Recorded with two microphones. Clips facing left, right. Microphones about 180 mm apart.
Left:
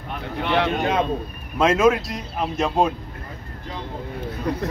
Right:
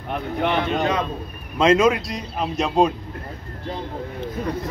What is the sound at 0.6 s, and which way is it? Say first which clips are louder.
Speech: left 1 dB; 55° left (ahead or behind).